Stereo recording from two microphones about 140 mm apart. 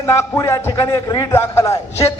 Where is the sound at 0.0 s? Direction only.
20° left (ahead or behind).